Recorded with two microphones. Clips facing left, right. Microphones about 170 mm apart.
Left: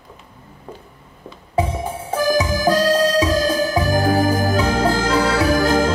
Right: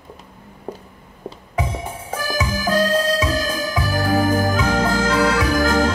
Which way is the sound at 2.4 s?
35° left (ahead or behind).